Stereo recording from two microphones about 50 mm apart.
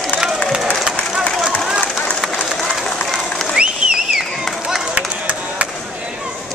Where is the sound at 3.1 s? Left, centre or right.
Centre.